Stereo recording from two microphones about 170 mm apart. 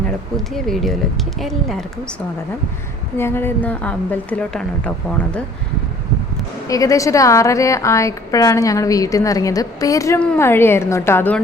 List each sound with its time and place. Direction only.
0.3 s speech: centre (ahead or behind)
3.2 s a woman's voice: 15° left (ahead or behind)
6.7 s a woman's voice: 20° left (ahead or behind)